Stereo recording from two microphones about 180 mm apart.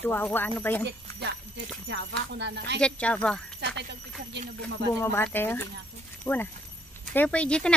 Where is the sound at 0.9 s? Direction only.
70° right (ahead or behind).